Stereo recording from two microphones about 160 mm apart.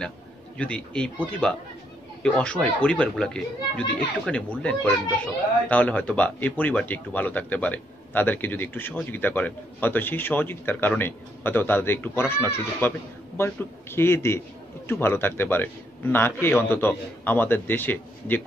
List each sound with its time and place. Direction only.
0.6 s speech: 5° left (ahead or behind)